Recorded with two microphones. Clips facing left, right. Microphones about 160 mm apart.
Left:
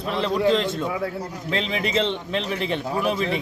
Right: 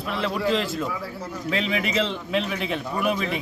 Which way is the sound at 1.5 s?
35° left (ahead or behind).